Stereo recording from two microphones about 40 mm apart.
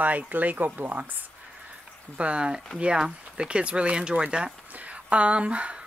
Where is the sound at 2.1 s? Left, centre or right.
Right.